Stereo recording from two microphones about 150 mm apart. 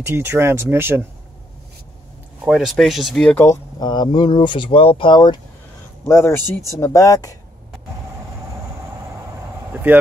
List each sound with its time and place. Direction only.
0.0 s speech: 15° right (ahead or behind)
2.4 s speech: 5° right (ahead or behind)
3.4 s speech: 30° left (ahead or behind)
6.0 s speech: 15° left (ahead or behind)